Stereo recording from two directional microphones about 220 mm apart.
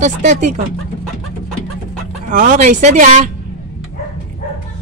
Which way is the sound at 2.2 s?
35° right (ahead or behind).